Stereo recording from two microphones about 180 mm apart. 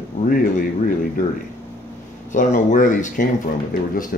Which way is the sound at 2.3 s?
45° left (ahead or behind).